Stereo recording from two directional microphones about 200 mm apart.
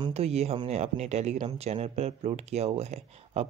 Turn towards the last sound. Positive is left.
turn(degrees=-30)  # may be behind; listen again after turning